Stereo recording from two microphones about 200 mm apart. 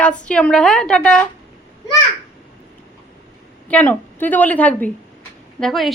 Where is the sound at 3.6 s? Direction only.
10° left (ahead or behind).